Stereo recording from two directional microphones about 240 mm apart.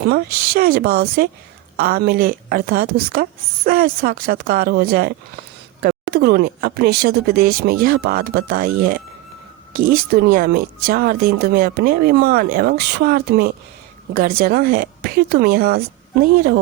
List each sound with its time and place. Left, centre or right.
0.0 s speech: right